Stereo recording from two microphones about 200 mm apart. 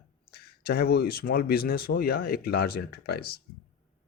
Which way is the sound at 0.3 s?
50° left (ahead or behind).